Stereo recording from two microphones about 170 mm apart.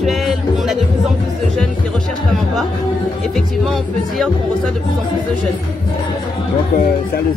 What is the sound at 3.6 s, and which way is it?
Music, centre (ahead or behind).